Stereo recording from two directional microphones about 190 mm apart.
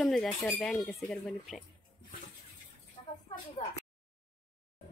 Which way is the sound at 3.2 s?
30° left (ahead or behind).